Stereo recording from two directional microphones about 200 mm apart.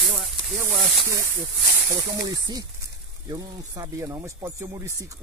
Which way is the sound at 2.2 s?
20° right (ahead or behind).